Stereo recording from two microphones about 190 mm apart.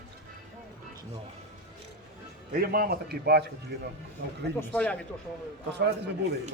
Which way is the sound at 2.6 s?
50° right (ahead or behind).